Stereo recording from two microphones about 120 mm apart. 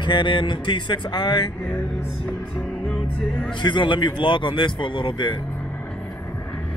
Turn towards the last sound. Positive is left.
turn(degrees=40)  # may be behind; listen again after turning